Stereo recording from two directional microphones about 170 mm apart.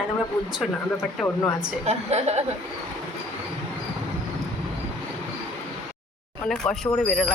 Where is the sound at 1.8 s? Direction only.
40° right (ahead or behind).